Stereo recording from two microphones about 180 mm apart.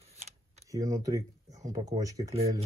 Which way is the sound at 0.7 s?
20° right (ahead or behind).